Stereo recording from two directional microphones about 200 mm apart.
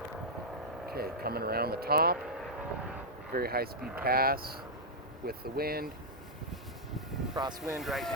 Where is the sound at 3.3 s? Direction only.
50° right (ahead or behind).